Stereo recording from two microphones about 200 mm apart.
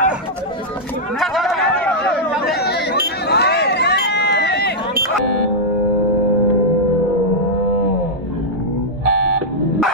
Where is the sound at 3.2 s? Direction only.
55° left (ahead or behind).